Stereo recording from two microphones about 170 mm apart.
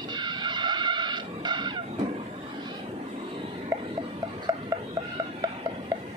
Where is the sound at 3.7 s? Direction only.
15° right (ahead or behind).